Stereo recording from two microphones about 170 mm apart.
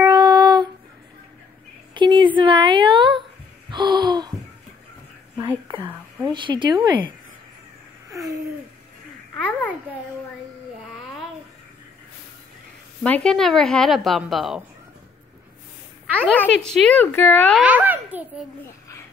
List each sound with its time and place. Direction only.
0.0 s child singing: 25° right (ahead or behind)
2.0 s a sound: 30° right (ahead or behind)
3.7 s gasp: 25° right (ahead or behind)
6.3 s speech: 30° right (ahead or behind)
8.1 s a sound: 20° right (ahead or behind)
9.3 s babbling: 10° left (ahead or behind)
13.0 s a woman's voice: 5° left (ahead or behind)
16.3 s a woman's voice: 5° left (ahead or behind)
17.6 s a child's voice: 10° right (ahead or behind)